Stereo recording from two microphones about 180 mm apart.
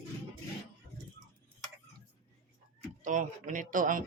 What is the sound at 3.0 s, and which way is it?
Speech, 45° right (ahead or behind).